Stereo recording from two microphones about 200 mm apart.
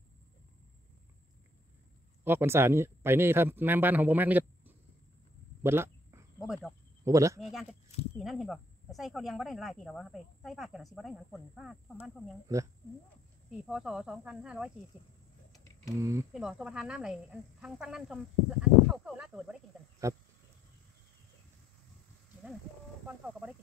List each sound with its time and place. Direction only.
2.2 s speech: 10° right (ahead or behind)
5.6 s a sound: 10° right (ahead or behind)
6.4 s speech: centre (ahead or behind)
7.1 s speech: 15° right (ahead or behind)
7.3 s speech: centre (ahead or behind)
13.5 s speech: 5° right (ahead or behind)
16.0 s speech: 15° right (ahead or behind)
16.3 s speech: 5° right (ahead or behind)
23.0 s speech: 5° right (ahead or behind)